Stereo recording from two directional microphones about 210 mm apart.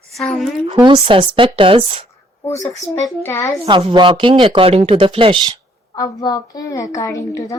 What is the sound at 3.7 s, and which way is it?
Speech, 25° right (ahead or behind).